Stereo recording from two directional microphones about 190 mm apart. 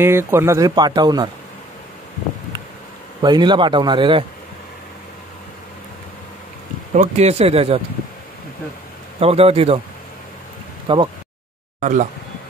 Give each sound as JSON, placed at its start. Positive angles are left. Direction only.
{"t": 0.0, "sound": "speech", "side_deg": -15}
{"t": 3.2, "sound": "speech", "side_deg": -25}
{"t": 6.9, "sound": "speech", "side_deg": -35}
{"t": 9.2, "sound": "speech", "side_deg": -30}
{"t": 10.9, "sound": "speech", "side_deg": -25}
{"t": 11.8, "sound": "speech", "side_deg": -40}